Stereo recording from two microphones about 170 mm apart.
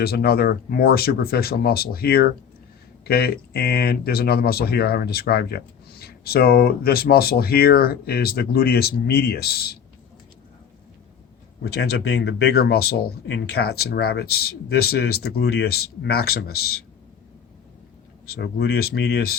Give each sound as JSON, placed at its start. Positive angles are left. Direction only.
{"t": 0.0, "sound": "speech", "side_deg": 65}
{"t": 11.6, "sound": "speech", "side_deg": 70}
{"t": 18.3, "sound": "speech", "side_deg": 70}